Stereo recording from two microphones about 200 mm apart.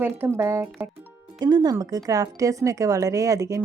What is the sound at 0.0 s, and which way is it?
Speech, 10° right (ahead or behind).